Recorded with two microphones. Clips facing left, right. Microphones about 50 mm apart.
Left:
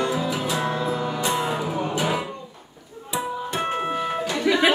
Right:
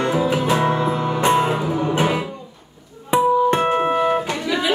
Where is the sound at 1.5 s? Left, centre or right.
Centre.